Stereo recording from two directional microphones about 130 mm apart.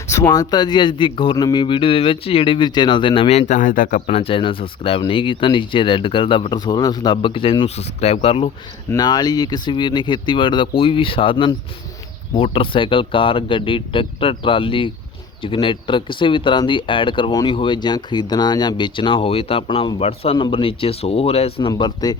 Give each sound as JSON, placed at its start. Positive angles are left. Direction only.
{"t": 0.1, "sound": "speech", "side_deg": 25}
{"t": 3.2, "sound": "speech", "side_deg": 65}
{"t": 4.1, "sound": "speech", "side_deg": 45}
{"t": 7.8, "sound": "speech", "side_deg": 55}
{"t": 9.0, "sound": "speech", "side_deg": 30}
{"t": 21.7, "sound": "speech", "side_deg": 35}